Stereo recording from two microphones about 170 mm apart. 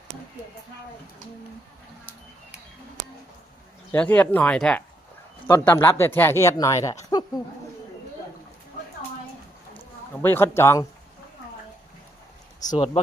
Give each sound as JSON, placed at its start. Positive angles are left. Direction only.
{"t": 3.9, "sound": "speech", "side_deg": 10}
{"t": 10.2, "sound": "speech", "side_deg": 15}
{"t": 12.7, "sound": "speech", "side_deg": 30}